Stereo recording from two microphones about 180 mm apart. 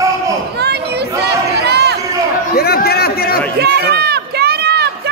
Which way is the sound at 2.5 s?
60° left (ahead or behind).